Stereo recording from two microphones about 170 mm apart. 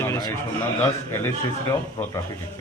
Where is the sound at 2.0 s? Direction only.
20° left (ahead or behind).